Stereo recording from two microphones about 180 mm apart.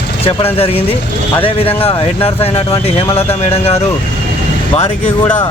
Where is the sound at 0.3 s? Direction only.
30° left (ahead or behind).